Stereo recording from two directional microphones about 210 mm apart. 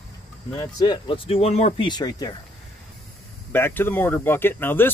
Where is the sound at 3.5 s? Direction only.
10° left (ahead or behind).